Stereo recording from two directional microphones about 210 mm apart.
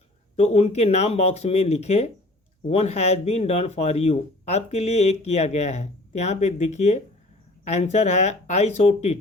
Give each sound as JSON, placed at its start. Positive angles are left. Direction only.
{"t": 0.3, "sound": "speech", "side_deg": 30}